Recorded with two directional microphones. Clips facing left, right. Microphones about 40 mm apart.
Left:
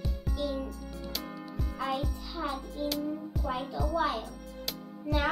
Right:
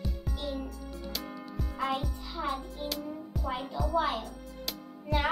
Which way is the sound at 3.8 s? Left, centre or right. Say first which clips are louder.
Right 1 dB; centre.